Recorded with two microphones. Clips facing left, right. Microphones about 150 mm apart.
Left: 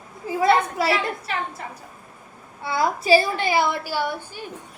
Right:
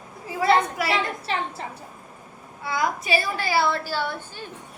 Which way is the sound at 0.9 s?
30° right (ahead or behind).